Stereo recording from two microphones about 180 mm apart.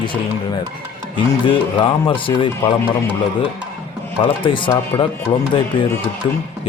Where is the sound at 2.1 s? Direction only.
30° left (ahead or behind).